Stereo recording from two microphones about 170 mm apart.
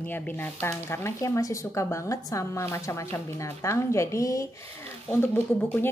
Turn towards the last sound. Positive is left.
turn(degrees=10)  # may be behind; listen again after turning